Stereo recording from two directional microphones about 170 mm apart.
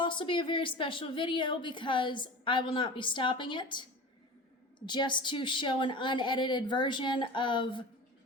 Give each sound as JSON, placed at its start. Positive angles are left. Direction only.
{"t": 0.0, "sound": "a woman's voice", "side_deg": 30}
{"t": 4.9, "sound": "a woman's voice", "side_deg": 25}